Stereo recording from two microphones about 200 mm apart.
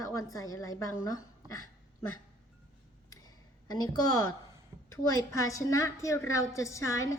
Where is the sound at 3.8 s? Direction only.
15° left (ahead or behind).